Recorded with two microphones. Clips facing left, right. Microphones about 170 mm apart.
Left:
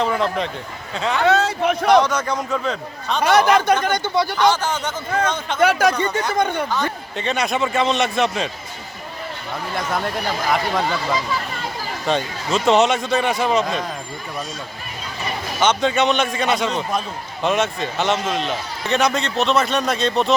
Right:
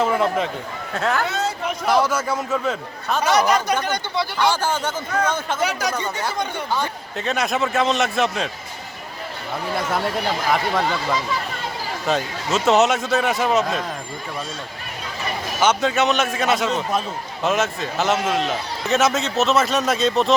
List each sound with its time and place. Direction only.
0.0 s a man's voice: 5° right (ahead or behind)
1.2 s speech: 70° left (ahead or behind)
1.9 s a man's voice: 5° right (ahead or behind)
3.8 s speech: 50° left (ahead or behind)
4.4 s speech: 10° right (ahead or behind)
5.5 s speech: 60° left (ahead or behind)
6.7 s a man's voice: 5° right (ahead or behind)
10.5 s a man's voice: centre (ahead or behind)
15.6 s a man's voice: 5° right (ahead or behind)